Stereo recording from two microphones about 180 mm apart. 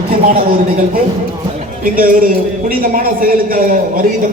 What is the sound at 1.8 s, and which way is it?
A man's voice, 50° right (ahead or behind).